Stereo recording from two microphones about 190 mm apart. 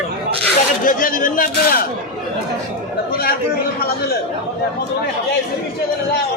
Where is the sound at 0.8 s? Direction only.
45° left (ahead or behind).